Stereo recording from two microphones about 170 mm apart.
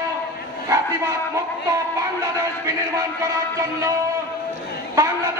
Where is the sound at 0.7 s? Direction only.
20° right (ahead or behind).